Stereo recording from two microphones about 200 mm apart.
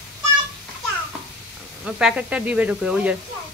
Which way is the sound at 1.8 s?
5° right (ahead or behind).